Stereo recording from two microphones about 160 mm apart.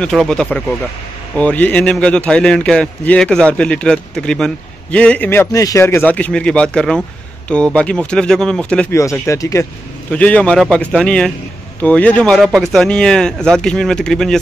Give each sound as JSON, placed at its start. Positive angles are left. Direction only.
{"t": 0.0, "sound": "a man's voice", "side_deg": 5}
{"t": 8.9, "sound": "speech", "side_deg": 15}
{"t": 10.1, "sound": "a man's voice", "side_deg": 10}